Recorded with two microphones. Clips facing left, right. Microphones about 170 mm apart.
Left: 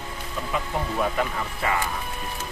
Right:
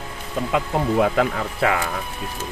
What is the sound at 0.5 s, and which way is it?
Speech, 85° right.